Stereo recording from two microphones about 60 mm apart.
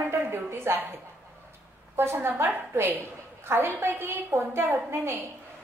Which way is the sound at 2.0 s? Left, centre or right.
Right.